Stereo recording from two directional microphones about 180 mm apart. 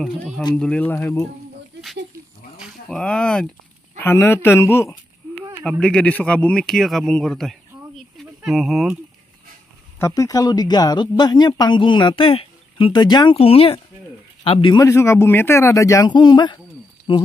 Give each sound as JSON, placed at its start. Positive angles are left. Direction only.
{"t": 0.0, "sound": "speech", "side_deg": 0}
{"t": 2.6, "sound": "speech", "side_deg": 5}
{"t": 5.7, "sound": "speech", "side_deg": 5}
{"t": 9.9, "sound": "speech", "side_deg": 15}